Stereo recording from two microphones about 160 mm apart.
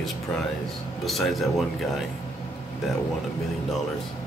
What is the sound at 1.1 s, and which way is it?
Speech, centre (ahead or behind).